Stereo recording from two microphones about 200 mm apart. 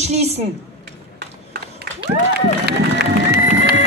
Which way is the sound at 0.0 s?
35° right (ahead or behind).